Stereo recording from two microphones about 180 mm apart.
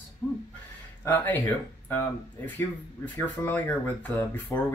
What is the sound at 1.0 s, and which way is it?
Speech, 10° left (ahead or behind).